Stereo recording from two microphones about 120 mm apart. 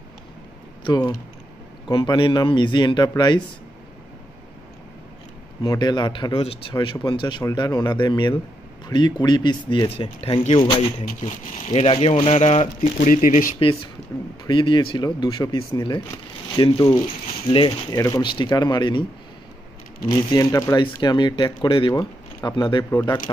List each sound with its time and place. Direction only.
0.8 s speech: 35° left (ahead or behind)
5.6 s speech: 35° left (ahead or behind)
6.3 s speech: 50° left (ahead or behind)
6.7 s speech: 40° left (ahead or behind)
9.8 s speech: 55° left (ahead or behind)
11.2 s speech: 60° left (ahead or behind); by 13.6 s 90° left
14.4 s speech: 40° left (ahead or behind)
17.9 s speech: 30° left (ahead or behind)
20.3 s speech: 30° left (ahead or behind)
20.8 s speech: 40° left (ahead or behind)